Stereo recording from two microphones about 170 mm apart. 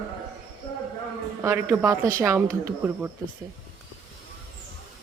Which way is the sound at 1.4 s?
10° right (ahead or behind).